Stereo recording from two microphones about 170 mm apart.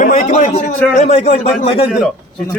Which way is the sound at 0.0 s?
50° left (ahead or behind).